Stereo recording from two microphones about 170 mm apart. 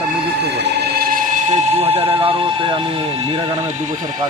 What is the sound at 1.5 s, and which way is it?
Speech, 40° right (ahead or behind).